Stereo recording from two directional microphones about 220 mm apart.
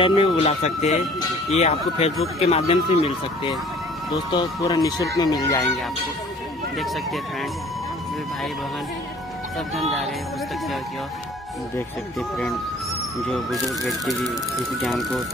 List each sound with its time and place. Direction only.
0.0 s speech: 25° left (ahead or behind)
12.2 s speech: centre (ahead or behind)